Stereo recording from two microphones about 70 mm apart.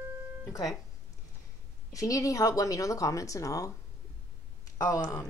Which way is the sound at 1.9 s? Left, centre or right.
Left.